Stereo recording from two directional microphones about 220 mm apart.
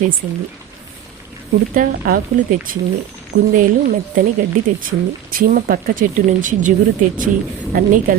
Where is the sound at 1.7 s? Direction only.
40° right (ahead or behind).